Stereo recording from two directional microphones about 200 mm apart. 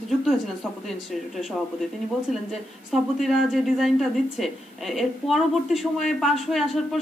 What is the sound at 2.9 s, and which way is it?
Speech, centre (ahead or behind).